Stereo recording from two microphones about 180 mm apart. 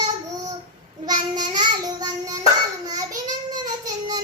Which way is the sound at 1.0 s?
25° right (ahead or behind).